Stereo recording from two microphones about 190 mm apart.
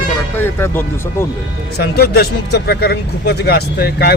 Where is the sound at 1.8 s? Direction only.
55° left (ahead or behind).